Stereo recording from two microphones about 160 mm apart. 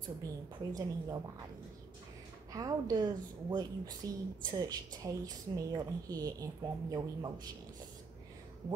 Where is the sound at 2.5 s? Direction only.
25° right (ahead or behind).